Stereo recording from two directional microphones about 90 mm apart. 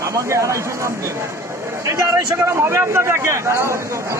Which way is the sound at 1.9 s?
30° right (ahead or behind).